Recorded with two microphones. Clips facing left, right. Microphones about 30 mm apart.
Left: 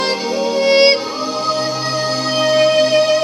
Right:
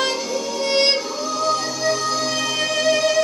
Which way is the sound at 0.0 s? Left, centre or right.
Left.